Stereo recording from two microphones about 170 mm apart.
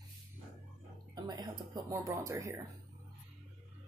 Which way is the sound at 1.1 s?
20° right (ahead or behind).